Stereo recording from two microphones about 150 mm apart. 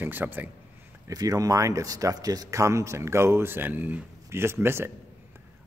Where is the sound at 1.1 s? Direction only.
25° right (ahead or behind).